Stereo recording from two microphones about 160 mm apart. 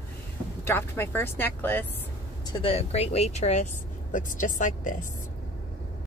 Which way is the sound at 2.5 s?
35° left (ahead or behind).